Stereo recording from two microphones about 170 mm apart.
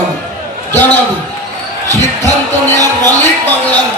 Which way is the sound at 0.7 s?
10° left (ahead or behind).